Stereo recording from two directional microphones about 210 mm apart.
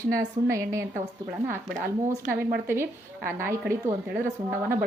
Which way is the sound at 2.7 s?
10° right (ahead or behind).